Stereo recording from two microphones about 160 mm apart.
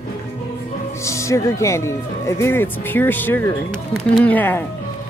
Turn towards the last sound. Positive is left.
turn(degrees=10)  # may be behind; listen again after turning